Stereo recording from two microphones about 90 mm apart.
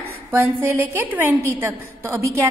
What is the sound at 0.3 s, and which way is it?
A woman's voice, 25° right (ahead or behind).